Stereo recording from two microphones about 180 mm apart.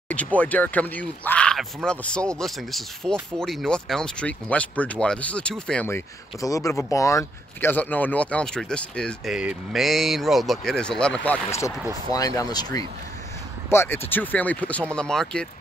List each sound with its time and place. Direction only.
0.1 s speech: 5° left (ahead or behind)
5.9 s speech: 15° left (ahead or behind)
13.7 s speech: 10° left (ahead or behind)